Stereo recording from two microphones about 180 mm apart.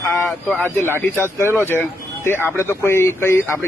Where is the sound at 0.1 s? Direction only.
5° left (ahead or behind).